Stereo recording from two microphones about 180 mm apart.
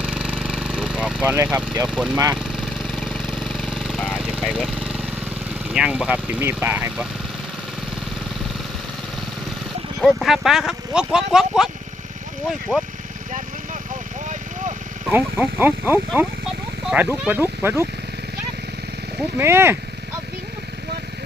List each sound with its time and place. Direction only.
0.0 s vehicle: 5° right (ahead or behind)
1.9 s speech: centre (ahead or behind)
2.1 s speech: 20° right (ahead or behind)
2.6 s engine: centre (ahead or behind)
5.7 s speech: 5° right (ahead or behind)
10.0 s speech: centre (ahead or behind)
15.1 s speech: 10° right (ahead or behind)
19.4 s speech: 15° right (ahead or behind)